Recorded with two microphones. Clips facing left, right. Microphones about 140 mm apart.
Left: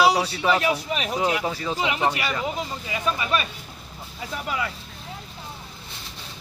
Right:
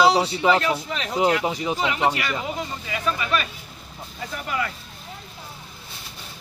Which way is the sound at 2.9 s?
20° left (ahead or behind).